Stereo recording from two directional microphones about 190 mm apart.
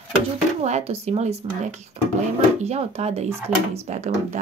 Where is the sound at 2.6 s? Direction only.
35° right (ahead or behind).